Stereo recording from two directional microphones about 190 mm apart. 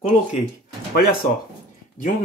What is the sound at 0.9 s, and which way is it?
Speech, 55° left (ahead or behind).